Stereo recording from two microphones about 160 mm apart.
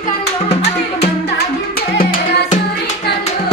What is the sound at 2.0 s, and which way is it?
Music, 60° left (ahead or behind).